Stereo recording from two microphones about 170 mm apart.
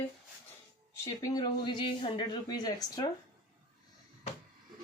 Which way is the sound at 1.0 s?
20° left (ahead or behind).